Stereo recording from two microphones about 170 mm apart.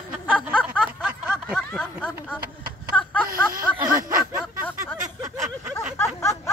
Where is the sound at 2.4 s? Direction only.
60° right (ahead or behind).